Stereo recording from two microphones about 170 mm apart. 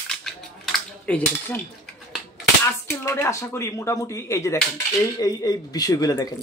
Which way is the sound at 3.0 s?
15° left (ahead or behind).